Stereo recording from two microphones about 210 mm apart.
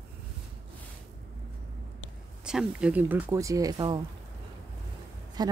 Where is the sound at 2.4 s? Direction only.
5° right (ahead or behind); by 4.0 s 20° right (ahead or behind).